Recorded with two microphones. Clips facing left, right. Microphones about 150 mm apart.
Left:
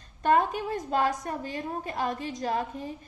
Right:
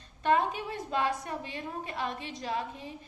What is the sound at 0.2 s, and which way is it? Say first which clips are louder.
A woman's voice: left 3 dB; 45° left (ahead or behind).